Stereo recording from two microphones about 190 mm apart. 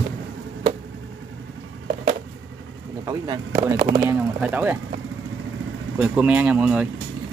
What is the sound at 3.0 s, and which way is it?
Speech, 20° right (ahead or behind).